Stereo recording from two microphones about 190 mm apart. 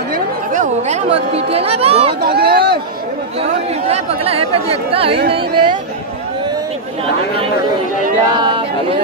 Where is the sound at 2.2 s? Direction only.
55° right (ahead or behind).